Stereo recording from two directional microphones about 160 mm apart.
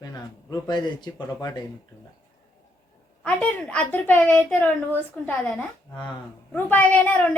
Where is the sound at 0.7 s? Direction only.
25° left (ahead or behind).